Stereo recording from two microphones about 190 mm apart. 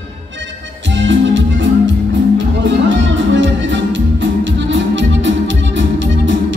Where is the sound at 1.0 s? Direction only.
75° right (ahead or behind).